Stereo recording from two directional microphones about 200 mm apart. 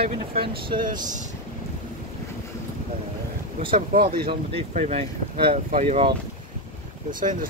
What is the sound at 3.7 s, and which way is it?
Speech, 45° right (ahead or behind).